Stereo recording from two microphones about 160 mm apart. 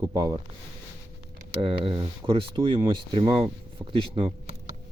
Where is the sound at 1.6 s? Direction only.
30° right (ahead or behind).